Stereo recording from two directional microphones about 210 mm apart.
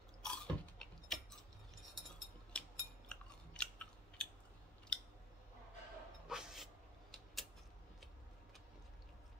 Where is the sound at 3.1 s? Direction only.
5° left (ahead or behind).